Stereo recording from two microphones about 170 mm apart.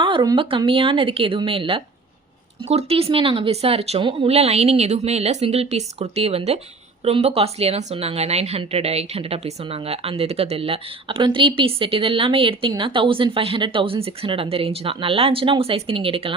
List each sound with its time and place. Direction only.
0.0 s a woman's voice: 30° right (ahead or behind)